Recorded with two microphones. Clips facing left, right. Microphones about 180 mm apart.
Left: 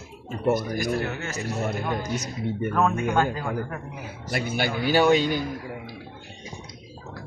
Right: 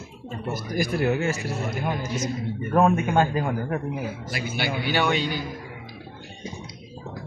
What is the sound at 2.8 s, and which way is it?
Speech, 20° right (ahead or behind).